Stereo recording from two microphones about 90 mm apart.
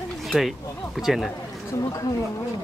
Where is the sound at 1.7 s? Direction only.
35° left (ahead or behind).